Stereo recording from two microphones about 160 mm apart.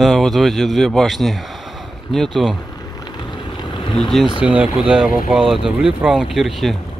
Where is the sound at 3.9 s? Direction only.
Centre (ahead or behind).